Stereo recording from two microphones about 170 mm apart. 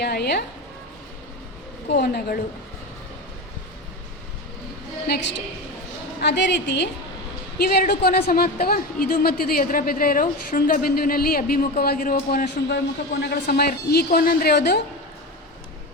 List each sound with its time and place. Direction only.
0.0 s a woman's voice: 75° left (ahead or behind)
1.9 s a man's voice: 70° left (ahead or behind)
6.2 s a woman's voice: 90° left
7.6 s a woman's voice: 65° left (ahead or behind)